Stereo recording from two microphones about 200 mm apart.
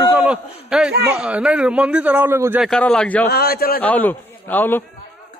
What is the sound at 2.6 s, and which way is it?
Speech, 5° left (ahead or behind).